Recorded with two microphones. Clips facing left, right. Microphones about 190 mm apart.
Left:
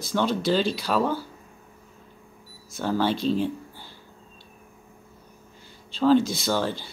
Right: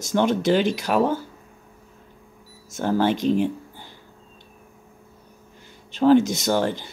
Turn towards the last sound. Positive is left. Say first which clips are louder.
# right 4 dB
turn(degrees=-15)  # may be behind; listen again after turning